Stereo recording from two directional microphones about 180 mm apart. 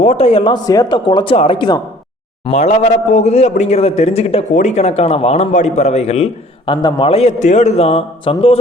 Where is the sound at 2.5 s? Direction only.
40° left (ahead or behind).